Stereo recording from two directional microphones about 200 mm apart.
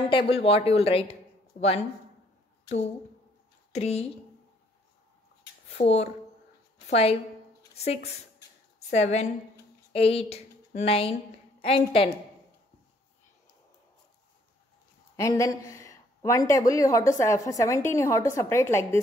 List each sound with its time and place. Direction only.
0.1 s speech: 25° left (ahead or behind)
3.7 s a woman's voice: 30° left (ahead or behind)
5.8 s a woman's voice: 30° left (ahead or behind)
15.1 s speech: 15° left (ahead or behind)